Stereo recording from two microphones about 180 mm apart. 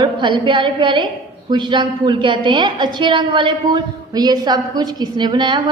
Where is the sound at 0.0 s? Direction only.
25° right (ahead or behind).